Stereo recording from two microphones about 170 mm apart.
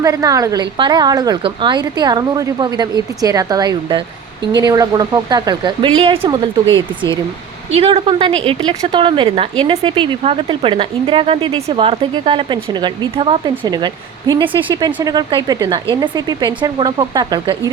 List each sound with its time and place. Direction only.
0.0 s a woman's voice: 20° right (ahead or behind)